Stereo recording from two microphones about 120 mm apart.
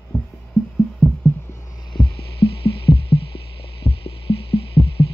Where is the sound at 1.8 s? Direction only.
40° left (ahead or behind).